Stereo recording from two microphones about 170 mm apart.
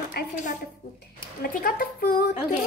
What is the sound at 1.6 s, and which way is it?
Speech, 60° left (ahead or behind).